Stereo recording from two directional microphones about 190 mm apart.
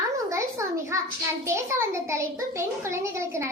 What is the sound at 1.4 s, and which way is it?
A child's voice, 15° right (ahead or behind).